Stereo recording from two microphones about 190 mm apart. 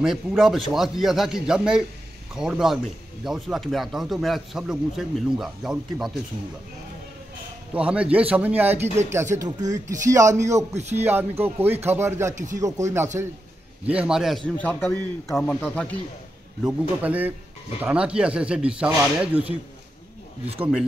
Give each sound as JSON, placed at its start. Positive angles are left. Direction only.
{"t": 0.0, "sound": "speech", "side_deg": -5}
{"t": 7.7, "sound": "speech", "side_deg": -5}
{"t": 10.5, "sound": "speech", "side_deg": -35}
{"t": 11.0, "sound": "speech", "side_deg": -10}
{"t": 17.0, "sound": "speech", "side_deg": -10}